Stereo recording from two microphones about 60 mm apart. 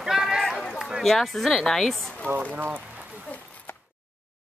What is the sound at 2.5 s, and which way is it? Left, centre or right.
Speech, right.